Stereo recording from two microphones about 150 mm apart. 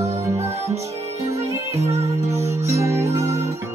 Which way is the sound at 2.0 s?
20° right (ahead or behind).